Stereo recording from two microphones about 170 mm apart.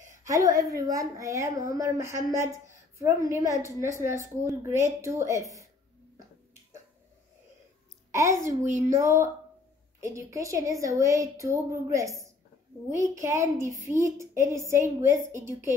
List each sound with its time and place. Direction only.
0.2 s a woman's voice: 20° right (ahead or behind)
8.1 s a child's voice: 15° right (ahead or behind)
8.5 s speech: 45° right (ahead or behind)
8.8 s speech: 15° right (ahead or behind)